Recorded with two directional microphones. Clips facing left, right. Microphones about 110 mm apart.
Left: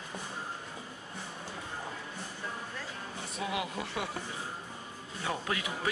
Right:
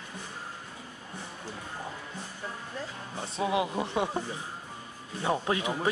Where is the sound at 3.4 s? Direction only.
25° right (ahead or behind).